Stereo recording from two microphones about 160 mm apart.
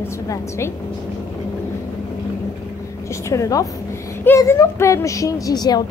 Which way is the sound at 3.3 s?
20° left (ahead or behind).